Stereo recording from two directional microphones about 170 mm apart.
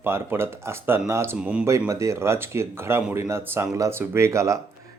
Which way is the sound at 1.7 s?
20° right (ahead or behind).